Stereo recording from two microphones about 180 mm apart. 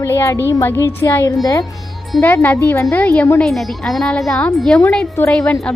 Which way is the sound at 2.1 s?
10° left (ahead or behind).